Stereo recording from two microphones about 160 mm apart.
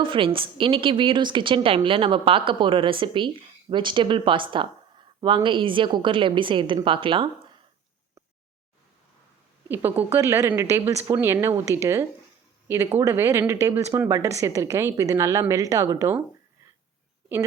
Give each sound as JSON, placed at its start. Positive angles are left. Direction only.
{"t": 0.0, "sound": "a woman's voice", "side_deg": -30}
{"t": 9.6, "sound": "a woman's voice", "side_deg": -10}